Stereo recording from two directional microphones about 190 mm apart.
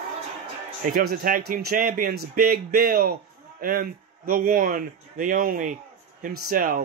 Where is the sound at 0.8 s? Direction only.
50° right (ahead or behind).